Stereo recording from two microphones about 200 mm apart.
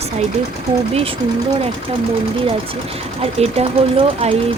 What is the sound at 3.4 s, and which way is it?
Speech, 30° right (ahead or behind).